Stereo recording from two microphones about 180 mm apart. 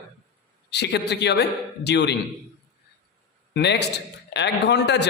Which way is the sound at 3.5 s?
70° left (ahead or behind).